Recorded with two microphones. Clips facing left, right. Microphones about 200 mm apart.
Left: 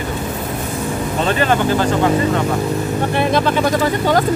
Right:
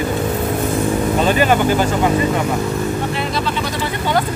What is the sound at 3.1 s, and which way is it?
Speech, 50° left (ahead or behind).